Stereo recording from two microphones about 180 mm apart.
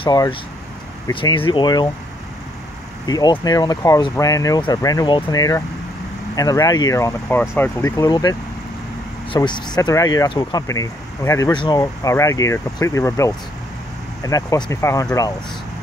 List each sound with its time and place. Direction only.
0.0 s speech: 25° left (ahead or behind)
3.1 s speech: 20° left (ahead or behind)